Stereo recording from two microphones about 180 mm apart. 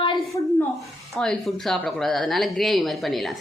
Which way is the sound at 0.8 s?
Centre (ahead or behind).